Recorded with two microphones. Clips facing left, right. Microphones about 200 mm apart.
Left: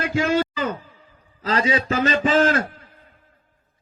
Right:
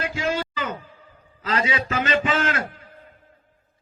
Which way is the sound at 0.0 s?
60° left (ahead or behind).